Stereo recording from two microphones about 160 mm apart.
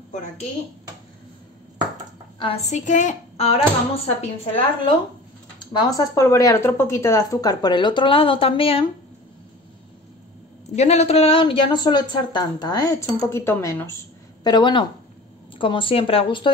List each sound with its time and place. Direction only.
2.3 s a sound: 30° left (ahead or behind)
2.7 s speech: 50° left (ahead or behind)
5.6 s speech: 25° left (ahead or behind)
10.8 s speech: 40° left (ahead or behind); by 14.0 s 15° left (ahead or behind)
14.4 s speech: 30° left (ahead or behind)